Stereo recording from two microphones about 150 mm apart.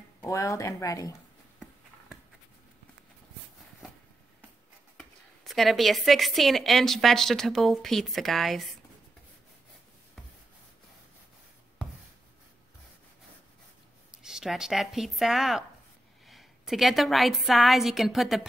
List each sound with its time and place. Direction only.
0.2 s speech: 20° left (ahead or behind)
4.9 s a woman's voice: centre (ahead or behind)
14.1 s a woman's voice: 5° right (ahead or behind)